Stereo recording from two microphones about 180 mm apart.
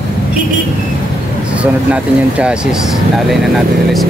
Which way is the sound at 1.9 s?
5° right (ahead or behind).